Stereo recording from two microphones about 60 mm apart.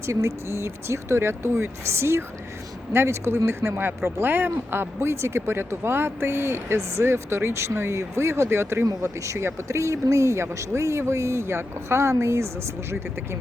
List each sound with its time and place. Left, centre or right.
0.0 s speech: right
8.9 s speech: right